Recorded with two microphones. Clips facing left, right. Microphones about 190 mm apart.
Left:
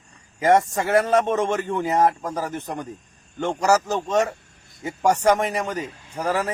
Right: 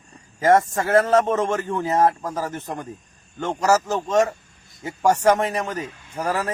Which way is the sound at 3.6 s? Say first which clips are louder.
Right 1 dB; centre (ahead or behind).